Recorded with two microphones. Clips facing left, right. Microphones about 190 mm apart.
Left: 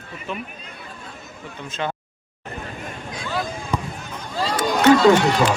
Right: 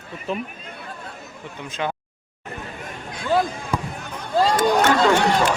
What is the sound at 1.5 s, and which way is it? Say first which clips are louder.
Speech: even; 15° right (ahead or behind).